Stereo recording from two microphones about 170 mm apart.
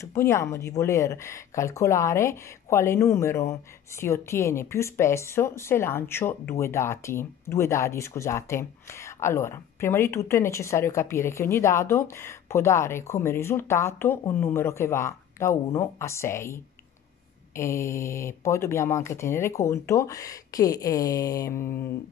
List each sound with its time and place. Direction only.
0.0 s a woman's voice: 15° left (ahead or behind)